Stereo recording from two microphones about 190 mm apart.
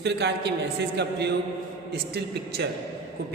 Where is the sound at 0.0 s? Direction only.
65° right (ahead or behind).